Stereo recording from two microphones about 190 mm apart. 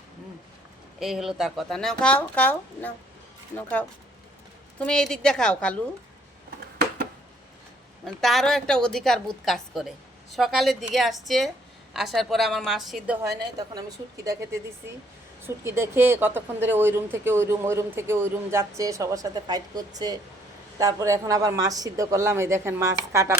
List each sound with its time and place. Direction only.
0.9 s speech: centre (ahead or behind)
8.0 s speech: centre (ahead or behind)
13.4 s a woman's voice: 20° right (ahead or behind)
15.4 s speech: 15° right (ahead or behind)